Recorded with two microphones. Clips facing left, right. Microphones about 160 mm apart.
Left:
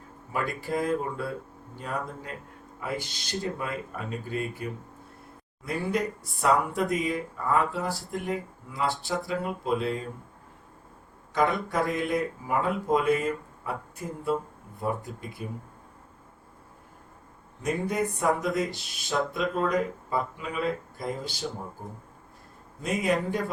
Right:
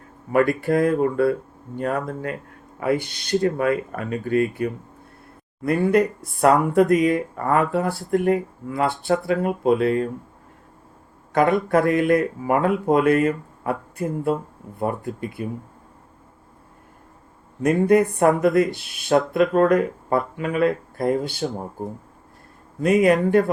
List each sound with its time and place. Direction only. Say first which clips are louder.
0.3 s speech: right 12 dB; 65° right (ahead or behind)
11.3 s speech: right 8 dB; 60° right (ahead or behind)
17.6 s speech: right 11 dB; 60° right (ahead or behind)
22.8 s speech: right 10 dB; 70° right (ahead or behind)